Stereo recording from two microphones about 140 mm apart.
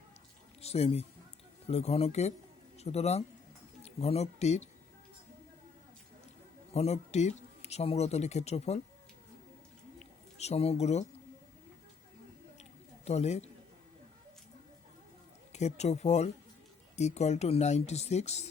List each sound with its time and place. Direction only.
0.6 s a man's voice: 45° left (ahead or behind)
6.7 s speech: 50° left (ahead or behind)
10.0 s a sound: 50° left (ahead or behind)
13.1 s speech: 50° left (ahead or behind)
15.5 s speech: 55° left (ahead or behind)